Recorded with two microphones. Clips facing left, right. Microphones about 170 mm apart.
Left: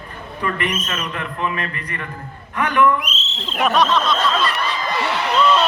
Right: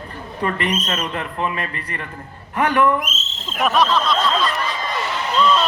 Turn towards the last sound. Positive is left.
turn(degrees=5)  # may be behind; listen again after turning